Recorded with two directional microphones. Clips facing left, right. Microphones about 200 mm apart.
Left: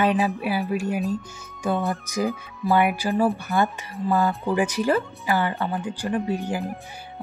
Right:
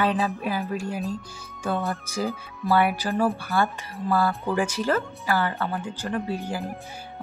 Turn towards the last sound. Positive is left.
turn(degrees=15)  # may be behind; listen again after turning